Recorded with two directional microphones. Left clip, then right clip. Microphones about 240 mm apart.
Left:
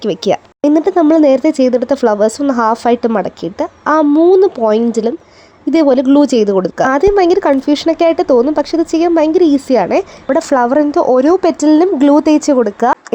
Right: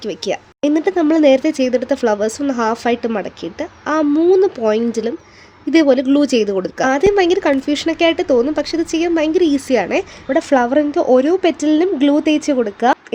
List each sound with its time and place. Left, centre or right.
0.0 s speech: left